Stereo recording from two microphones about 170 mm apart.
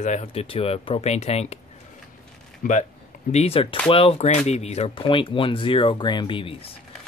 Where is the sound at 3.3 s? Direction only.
35° left (ahead or behind).